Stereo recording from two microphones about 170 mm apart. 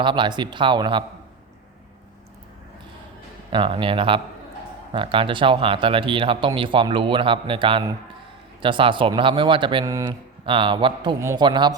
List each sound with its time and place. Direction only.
0.0 s speech: 30° right (ahead or behind)
3.5 s speech: 30° right (ahead or behind)
10.4 s speech: 30° right (ahead or behind)
11.2 s a man's voice: 15° right (ahead or behind)
11.4 s speech: 25° right (ahead or behind)